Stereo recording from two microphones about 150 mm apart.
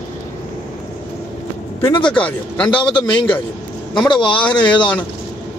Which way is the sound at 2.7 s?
35° left (ahead or behind).